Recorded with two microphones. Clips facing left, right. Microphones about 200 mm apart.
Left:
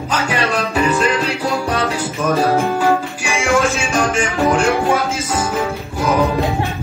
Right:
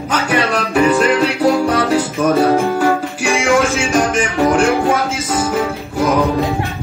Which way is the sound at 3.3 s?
15° right (ahead or behind).